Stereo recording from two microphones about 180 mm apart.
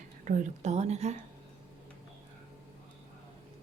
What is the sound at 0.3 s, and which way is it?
Speech, 45° right (ahead or behind).